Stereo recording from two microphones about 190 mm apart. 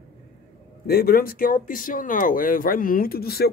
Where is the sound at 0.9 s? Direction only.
55° left (ahead or behind).